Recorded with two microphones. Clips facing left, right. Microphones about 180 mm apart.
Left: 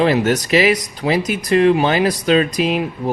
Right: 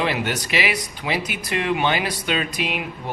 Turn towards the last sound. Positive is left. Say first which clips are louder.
# left 9 dB
turn(degrees=40)  # may be behind; listen again after turning